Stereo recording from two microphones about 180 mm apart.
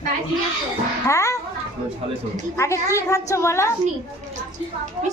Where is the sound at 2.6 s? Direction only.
15° left (ahead or behind).